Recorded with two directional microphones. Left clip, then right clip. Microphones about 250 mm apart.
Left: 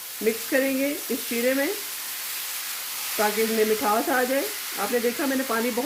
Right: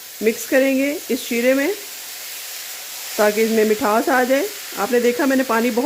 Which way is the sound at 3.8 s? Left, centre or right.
Right.